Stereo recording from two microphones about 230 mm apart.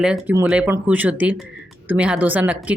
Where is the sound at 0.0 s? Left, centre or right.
Centre.